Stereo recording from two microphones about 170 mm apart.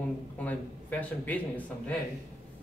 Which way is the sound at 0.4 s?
10° left (ahead or behind).